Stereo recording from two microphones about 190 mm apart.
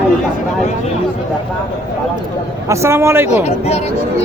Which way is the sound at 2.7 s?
15° right (ahead or behind).